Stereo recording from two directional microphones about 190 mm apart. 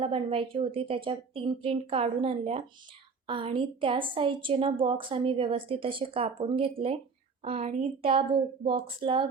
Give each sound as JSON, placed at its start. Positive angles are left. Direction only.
{"t": 0.0, "sound": "a woman's voice", "side_deg": -30}